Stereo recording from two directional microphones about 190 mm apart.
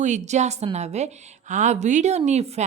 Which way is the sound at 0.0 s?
40° right (ahead or behind).